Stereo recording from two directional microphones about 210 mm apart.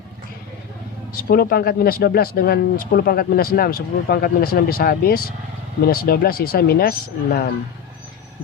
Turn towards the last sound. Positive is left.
turn(degrees=45)  # may be behind; listen again after turning